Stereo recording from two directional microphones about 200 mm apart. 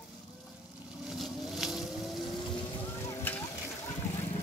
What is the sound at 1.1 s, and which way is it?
Vehicle, centre (ahead or behind).